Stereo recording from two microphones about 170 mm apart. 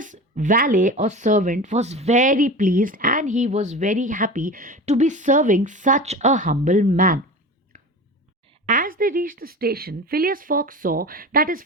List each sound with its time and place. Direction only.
0.0 s speech: 50° right (ahead or behind)
8.6 s speech: 50° right (ahead or behind)